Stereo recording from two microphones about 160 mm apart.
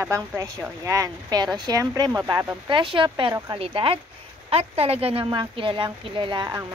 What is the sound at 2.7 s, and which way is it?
Speech, 30° right (ahead or behind).